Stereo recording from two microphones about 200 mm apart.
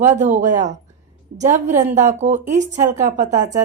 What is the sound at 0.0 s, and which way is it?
A woman's voice, 35° right (ahead or behind).